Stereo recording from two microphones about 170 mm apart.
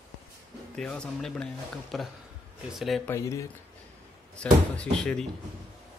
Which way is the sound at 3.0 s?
15° left (ahead or behind).